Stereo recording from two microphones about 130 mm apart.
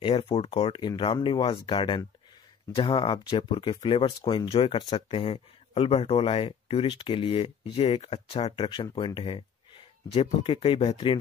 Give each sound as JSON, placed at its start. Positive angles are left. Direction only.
{"t": 0.0, "sound": "speech", "side_deg": 40}